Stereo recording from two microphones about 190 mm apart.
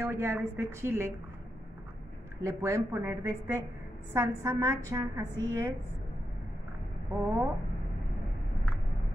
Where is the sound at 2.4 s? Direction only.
15° right (ahead or behind).